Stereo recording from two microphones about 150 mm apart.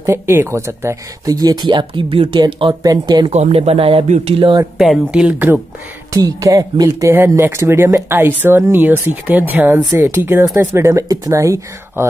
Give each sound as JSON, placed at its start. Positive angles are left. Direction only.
{"t": 0.0, "sound": "speech", "side_deg": -20}
{"t": 3.3, "sound": "speech", "side_deg": -45}
{"t": 4.7, "sound": "speech", "side_deg": -5}
{"t": 6.1, "sound": "speech", "side_deg": -25}